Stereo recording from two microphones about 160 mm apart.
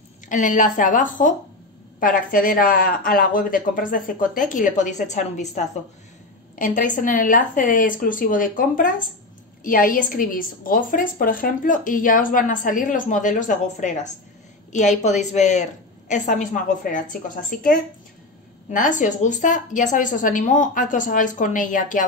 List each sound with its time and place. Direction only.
0.3 s a woman's voice: 55° left (ahead or behind)